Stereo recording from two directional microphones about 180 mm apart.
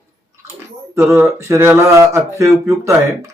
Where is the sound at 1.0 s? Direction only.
Centre (ahead or behind).